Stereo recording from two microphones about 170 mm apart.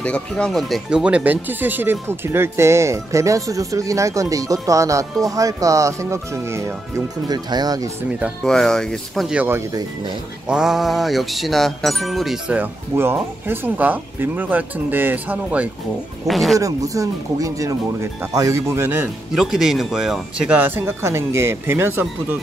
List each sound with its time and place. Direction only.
0.0 s speech: 5° left (ahead or behind); by 7.9 s 20° right (ahead or behind)
8.5 s music: 5° left (ahead or behind)
16.5 s speech: 20° right (ahead or behind)